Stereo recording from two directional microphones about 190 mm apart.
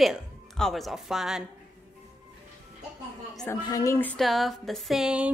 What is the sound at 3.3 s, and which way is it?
Speech, 5° left (ahead or behind).